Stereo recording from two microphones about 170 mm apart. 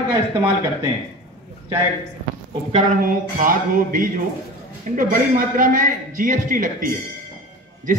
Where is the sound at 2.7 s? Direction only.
50° right (ahead or behind).